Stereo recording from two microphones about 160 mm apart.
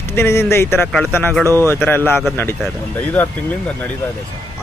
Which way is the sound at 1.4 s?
20° right (ahead or behind).